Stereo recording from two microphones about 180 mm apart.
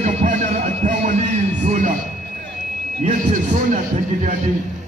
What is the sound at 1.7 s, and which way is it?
Speech, 40° right (ahead or behind).